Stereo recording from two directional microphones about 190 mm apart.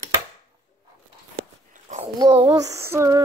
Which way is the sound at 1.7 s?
40° right (ahead or behind).